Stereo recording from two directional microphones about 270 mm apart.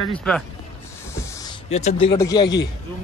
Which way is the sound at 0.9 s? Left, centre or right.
Centre.